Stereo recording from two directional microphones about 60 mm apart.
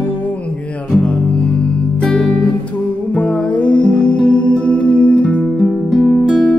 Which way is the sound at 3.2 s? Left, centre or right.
Centre.